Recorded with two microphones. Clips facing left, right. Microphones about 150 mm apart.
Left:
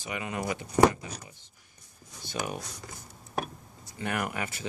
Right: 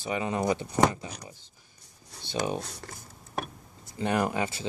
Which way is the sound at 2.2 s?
30° right (ahead or behind).